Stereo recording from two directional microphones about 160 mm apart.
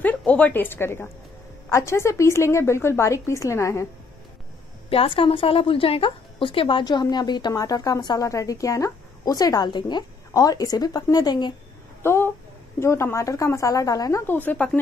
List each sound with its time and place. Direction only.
0.0 s a woman's voice: 10° left (ahead or behind)
4.8 s a woman's voice: 35° left (ahead or behind)
12.0 s a sound: 15° left (ahead or behind)
12.8 s a woman's voice: 15° left (ahead or behind)